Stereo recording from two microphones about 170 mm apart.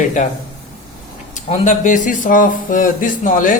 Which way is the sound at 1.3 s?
45° left (ahead or behind).